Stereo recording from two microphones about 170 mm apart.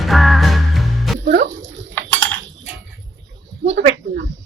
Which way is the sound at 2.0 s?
90° right.